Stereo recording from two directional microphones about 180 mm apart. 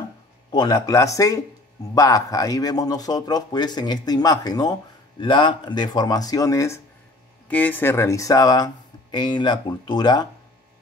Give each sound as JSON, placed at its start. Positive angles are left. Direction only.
{"t": 0.5, "sound": "a man's voice", "side_deg": 25}